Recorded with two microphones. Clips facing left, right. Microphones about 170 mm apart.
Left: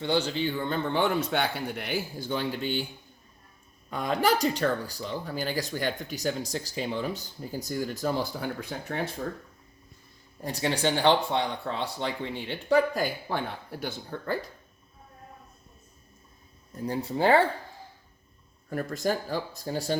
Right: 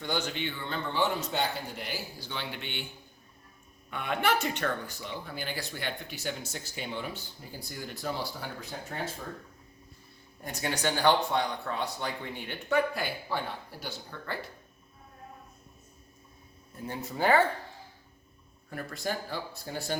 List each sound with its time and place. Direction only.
0.0 s a man's voice: 30° left (ahead or behind)
3.8 s speech: 35° left (ahead or behind)
8.7 s speech: 75° left (ahead or behind)
10.4 s speech: 30° left (ahead or behind)
12.6 s a man's voice: 40° left (ahead or behind)
16.7 s speech: 35° left (ahead or behind)
18.7 s a man's voice: 45° left (ahead or behind)